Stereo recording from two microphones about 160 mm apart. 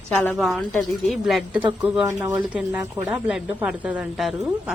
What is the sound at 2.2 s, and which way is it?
Speech, 25° right (ahead or behind).